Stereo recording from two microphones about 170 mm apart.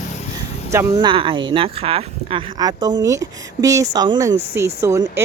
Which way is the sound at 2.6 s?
25° right (ahead or behind).